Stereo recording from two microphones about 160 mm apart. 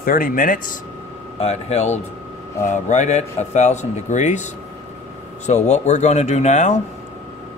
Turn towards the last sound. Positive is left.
turn(degrees=45)  # may be behind; listen again after turning